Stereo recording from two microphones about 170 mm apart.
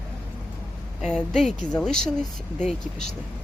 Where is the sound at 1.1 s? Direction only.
5° left (ahead or behind).